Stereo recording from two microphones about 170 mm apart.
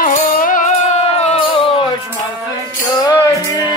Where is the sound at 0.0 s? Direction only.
55° left (ahead or behind); by 1.9 s 30° left (ahead or behind).